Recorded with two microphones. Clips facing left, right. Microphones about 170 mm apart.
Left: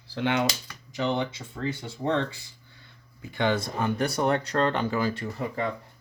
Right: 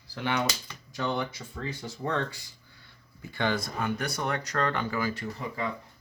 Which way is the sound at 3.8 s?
30° left (ahead or behind).